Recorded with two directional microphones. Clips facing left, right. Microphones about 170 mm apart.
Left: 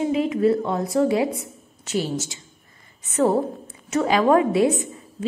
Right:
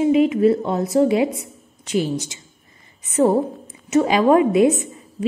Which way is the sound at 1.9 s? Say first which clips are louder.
Right 3 dB; 20° right (ahead or behind).